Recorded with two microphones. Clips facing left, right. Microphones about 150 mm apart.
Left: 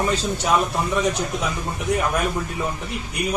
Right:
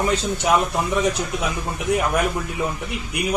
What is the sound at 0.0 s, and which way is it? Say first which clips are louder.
A man's voice: right 1 dB; 15° right (ahead or behind).